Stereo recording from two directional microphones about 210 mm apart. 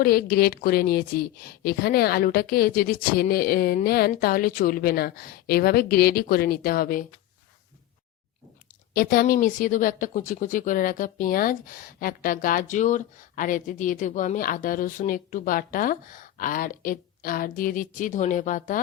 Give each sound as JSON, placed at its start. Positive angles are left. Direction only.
{"t": 0.0, "sound": "a woman's voice", "side_deg": 45}
{"t": 8.9, "sound": "speech", "side_deg": 45}